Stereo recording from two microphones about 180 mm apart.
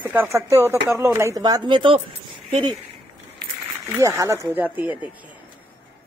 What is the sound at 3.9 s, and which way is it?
Speech, 15° right (ahead or behind).